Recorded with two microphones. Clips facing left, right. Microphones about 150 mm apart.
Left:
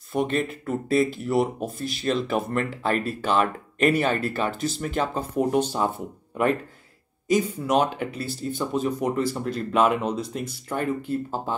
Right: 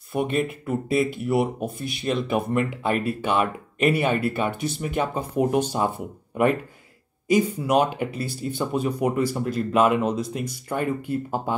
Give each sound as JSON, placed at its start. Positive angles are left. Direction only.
{"t": 0.1, "sound": "speech", "side_deg": -5}